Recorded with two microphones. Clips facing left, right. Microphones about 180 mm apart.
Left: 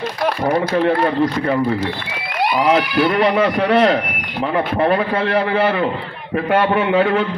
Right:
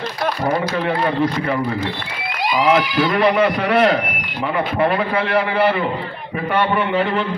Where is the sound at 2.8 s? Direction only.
60° left (ahead or behind).